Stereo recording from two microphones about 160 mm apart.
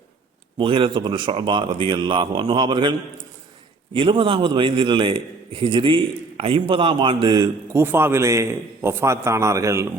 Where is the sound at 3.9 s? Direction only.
35° right (ahead or behind).